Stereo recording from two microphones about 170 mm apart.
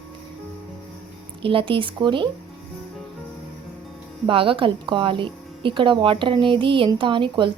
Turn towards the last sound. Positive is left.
turn(degrees=-30)  # may be behind; listen again after turning